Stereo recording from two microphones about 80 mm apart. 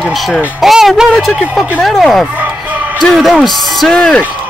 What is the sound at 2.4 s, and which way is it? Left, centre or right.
Music, centre.